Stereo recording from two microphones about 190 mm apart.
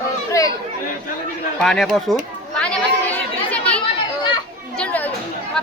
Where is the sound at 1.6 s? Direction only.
Centre (ahead or behind).